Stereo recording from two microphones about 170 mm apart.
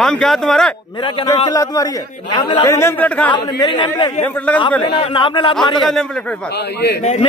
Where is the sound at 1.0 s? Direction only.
20° left (ahead or behind).